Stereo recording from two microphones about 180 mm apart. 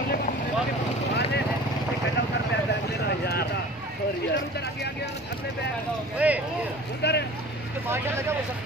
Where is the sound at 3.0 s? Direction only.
60° left (ahead or behind).